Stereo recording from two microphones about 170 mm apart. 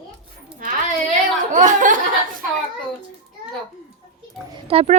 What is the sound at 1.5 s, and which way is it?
Speech, 50° right (ahead or behind).